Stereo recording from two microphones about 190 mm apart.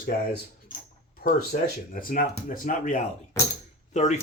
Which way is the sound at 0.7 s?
45° left (ahead or behind).